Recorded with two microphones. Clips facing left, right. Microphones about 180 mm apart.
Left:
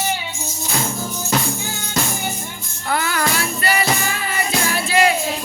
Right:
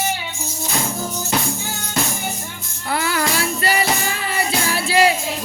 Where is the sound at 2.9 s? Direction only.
30° right (ahead or behind).